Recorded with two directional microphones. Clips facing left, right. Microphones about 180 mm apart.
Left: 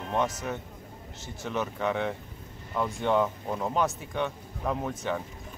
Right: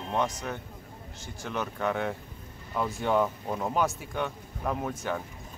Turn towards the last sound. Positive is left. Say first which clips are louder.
# left 1 dB
turn(degrees=0)  # may be behind; listen again after turning